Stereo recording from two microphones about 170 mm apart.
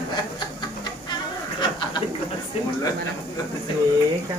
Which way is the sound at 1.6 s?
25° left (ahead or behind).